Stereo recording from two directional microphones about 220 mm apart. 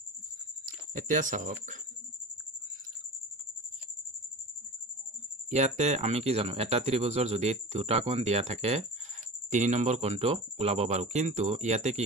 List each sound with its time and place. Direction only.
0.9 s speech: 35° right (ahead or behind)
5.5 s speech: 30° right (ahead or behind)